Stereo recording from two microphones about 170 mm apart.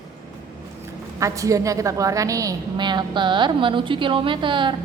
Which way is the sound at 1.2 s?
20° right (ahead or behind).